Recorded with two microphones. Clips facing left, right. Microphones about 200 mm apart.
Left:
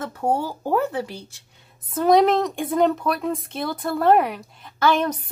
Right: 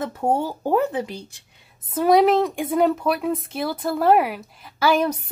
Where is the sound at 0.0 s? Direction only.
20° right (ahead or behind).